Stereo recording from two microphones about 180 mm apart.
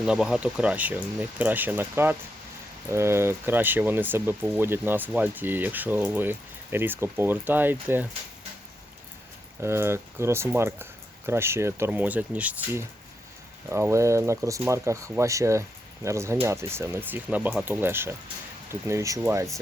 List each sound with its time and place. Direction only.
0.0 s speech: 5° right (ahead or behind)
9.6 s speech: 15° right (ahead or behind)